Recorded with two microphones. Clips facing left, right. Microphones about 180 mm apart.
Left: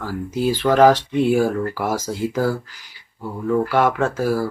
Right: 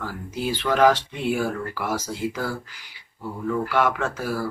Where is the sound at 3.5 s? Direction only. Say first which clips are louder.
Left 5 dB; 40° left (ahead or behind).